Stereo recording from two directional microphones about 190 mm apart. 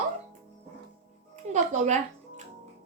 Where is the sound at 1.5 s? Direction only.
40° right (ahead or behind).